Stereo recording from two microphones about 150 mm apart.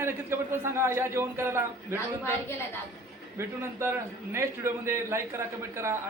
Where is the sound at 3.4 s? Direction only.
15° right (ahead or behind).